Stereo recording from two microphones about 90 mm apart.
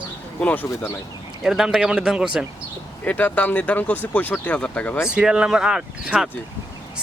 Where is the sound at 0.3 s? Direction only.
20° left (ahead or behind).